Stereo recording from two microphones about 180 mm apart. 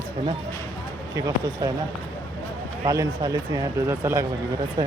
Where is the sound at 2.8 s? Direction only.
20° right (ahead or behind).